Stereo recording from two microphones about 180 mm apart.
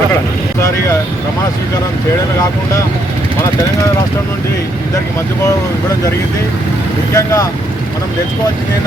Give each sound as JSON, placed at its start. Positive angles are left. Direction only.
{"t": 7.1, "sound": "speech", "side_deg": 15}